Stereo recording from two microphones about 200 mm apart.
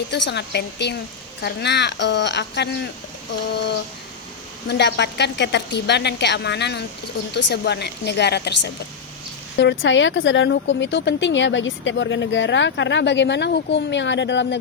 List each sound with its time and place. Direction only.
0.1 s speech: 60° left (ahead or behind)